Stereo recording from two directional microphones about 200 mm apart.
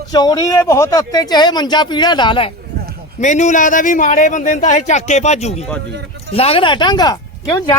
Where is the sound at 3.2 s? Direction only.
35° left (ahead or behind).